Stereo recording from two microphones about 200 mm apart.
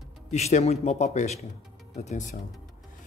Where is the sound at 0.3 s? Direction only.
35° left (ahead or behind).